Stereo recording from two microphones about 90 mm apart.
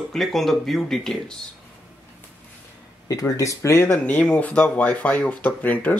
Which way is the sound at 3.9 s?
15° left (ahead or behind).